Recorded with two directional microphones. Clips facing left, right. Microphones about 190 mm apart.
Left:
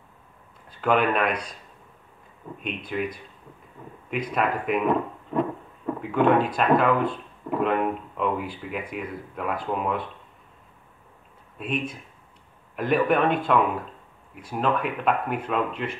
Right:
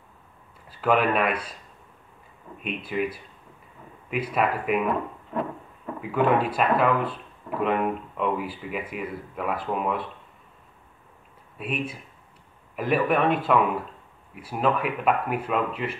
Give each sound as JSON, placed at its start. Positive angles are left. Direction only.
{"t": 0.7, "sound": "speech", "side_deg": -5}
{"t": 2.6, "sound": "speech", "side_deg": -5}
{"t": 5.9, "sound": "speech", "side_deg": -5}
{"t": 11.5, "sound": "speech", "side_deg": -5}